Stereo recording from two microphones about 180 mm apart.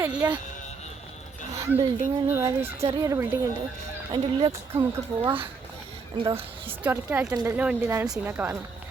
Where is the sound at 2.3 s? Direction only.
15° right (ahead or behind).